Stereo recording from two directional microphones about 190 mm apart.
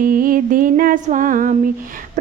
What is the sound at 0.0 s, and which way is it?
A woman's voice, 50° right (ahead or behind).